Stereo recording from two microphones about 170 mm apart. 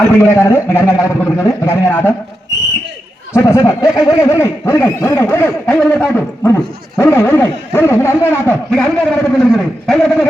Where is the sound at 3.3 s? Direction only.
15° left (ahead or behind).